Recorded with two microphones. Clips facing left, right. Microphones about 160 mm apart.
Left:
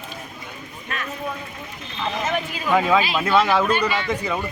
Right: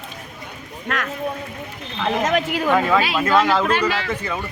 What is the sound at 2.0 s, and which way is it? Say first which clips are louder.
Speech: right 5 dB; 80° right.